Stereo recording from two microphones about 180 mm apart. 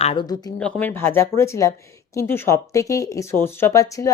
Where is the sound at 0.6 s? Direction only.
5° left (ahead or behind).